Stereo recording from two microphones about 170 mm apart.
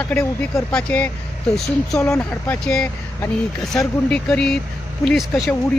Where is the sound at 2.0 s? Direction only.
15° left (ahead or behind).